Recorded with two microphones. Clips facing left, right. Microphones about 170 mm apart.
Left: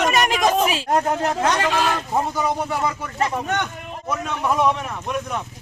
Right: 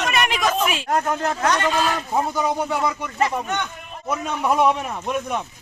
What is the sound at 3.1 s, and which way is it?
Speech, 5° right (ahead or behind).